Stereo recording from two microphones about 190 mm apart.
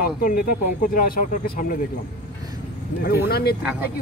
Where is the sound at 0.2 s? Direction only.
50° left (ahead or behind).